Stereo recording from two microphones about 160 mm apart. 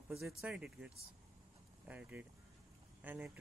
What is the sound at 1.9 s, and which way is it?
Speech, 10° right (ahead or behind).